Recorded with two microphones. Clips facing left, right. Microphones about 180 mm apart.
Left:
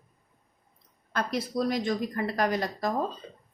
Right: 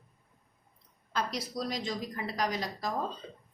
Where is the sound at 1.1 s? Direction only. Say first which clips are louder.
Left 5 dB; 55° left (ahead or behind).